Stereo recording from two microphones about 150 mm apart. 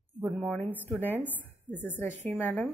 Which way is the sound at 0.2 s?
Centre (ahead or behind).